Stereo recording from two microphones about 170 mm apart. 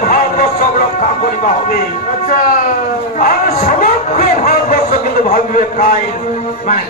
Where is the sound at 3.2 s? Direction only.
55° left (ahead or behind).